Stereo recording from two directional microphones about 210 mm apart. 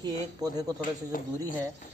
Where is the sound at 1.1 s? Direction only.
40° left (ahead or behind).